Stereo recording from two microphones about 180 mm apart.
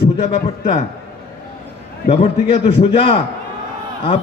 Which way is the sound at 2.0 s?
35° left (ahead or behind).